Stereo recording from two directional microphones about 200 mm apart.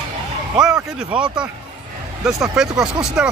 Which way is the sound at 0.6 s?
5° right (ahead or behind).